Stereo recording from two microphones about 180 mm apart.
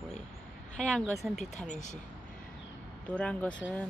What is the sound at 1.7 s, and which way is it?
Speech, 40° left (ahead or behind).